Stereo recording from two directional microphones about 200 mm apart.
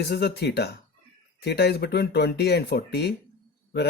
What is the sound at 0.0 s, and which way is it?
Speech, 55° left (ahead or behind).